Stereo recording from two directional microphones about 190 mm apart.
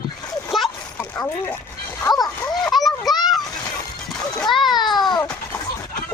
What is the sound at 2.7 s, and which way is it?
Children playing, centre (ahead or behind).